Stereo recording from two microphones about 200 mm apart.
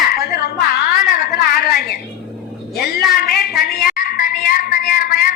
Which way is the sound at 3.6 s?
50° left (ahead or behind).